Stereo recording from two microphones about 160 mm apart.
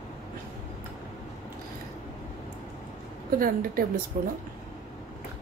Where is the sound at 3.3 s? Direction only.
60° right (ahead or behind).